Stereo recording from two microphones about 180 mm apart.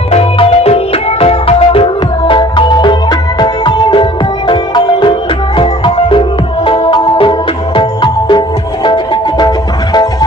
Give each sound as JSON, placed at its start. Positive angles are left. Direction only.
{"t": 0.1, "sound": "music", "side_deg": 35}